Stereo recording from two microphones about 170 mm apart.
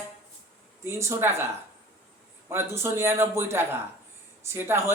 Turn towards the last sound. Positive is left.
turn(degrees=-15)  # may be behind; listen again after turning